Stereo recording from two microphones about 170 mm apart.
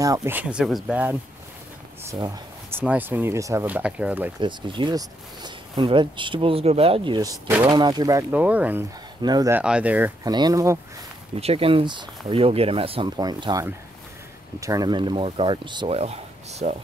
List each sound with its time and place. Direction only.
0.0 s speech: 20° right (ahead or behind)
2.0 s a sound: 20° right (ahead or behind)
2.8 s speech: 10° right (ahead or behind)
4.4 s speech: 25° right (ahead or behind)
7.2 s speech: 20° right (ahead or behind)
8.3 s speech: 10° right (ahead or behind)
9.2 s speech: 25° right (ahead or behind)
9.5 s speech: 5° right (ahead or behind)
10.2 s speech: 25° right (ahead or behind)
11.3 s speech: 35° right (ahead or behind)